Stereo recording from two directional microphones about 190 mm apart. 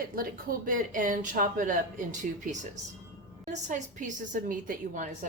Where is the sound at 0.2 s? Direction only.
45° right (ahead or behind).